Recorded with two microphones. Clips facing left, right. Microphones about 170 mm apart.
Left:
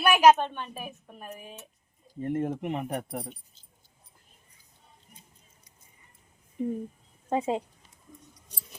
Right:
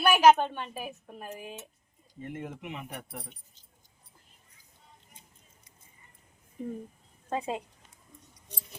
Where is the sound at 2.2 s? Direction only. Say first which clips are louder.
Left 10 dB; 40° left (ahead or behind).